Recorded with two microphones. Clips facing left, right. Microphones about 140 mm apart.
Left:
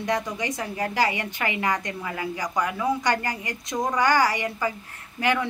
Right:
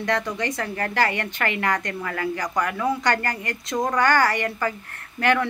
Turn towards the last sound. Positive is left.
turn(degrees=15)  # may be behind; listen again after turning